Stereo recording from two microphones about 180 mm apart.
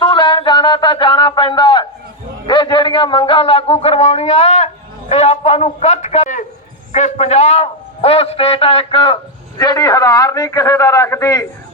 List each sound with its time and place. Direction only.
0.0 s a sound: 25° left (ahead or behind)
2.5 s a man's voice: 25° left (ahead or behind)
9.6 s a man's voice: 20° left (ahead or behind)